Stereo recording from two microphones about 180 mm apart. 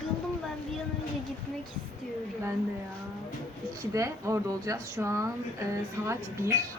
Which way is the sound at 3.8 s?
15° right (ahead or behind).